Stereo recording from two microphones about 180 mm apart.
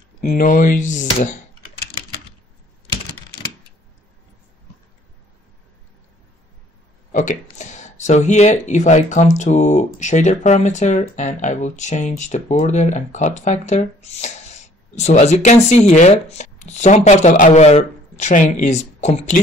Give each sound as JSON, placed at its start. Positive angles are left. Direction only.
{"t": 0.2, "sound": "speech", "side_deg": 45}
{"t": 7.1, "sound": "speech", "side_deg": 45}